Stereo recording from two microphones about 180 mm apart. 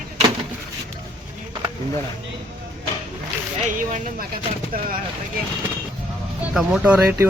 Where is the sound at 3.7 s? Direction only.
45° right (ahead or behind).